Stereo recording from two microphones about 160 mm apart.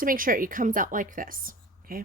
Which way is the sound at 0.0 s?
60° right (ahead or behind).